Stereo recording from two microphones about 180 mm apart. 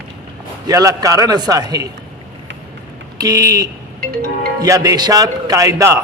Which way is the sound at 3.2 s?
20° right (ahead or behind).